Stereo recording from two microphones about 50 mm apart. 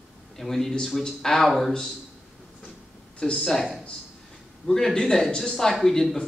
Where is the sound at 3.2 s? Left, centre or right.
Centre.